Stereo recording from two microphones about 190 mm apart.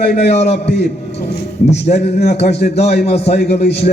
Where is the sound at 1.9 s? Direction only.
35° left (ahead or behind).